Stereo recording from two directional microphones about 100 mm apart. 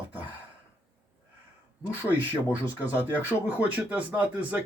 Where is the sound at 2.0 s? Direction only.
15° right (ahead or behind).